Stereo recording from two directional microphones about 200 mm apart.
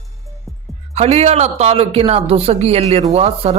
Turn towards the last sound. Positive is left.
turn(degrees=-30)  # may be behind; listen again after turning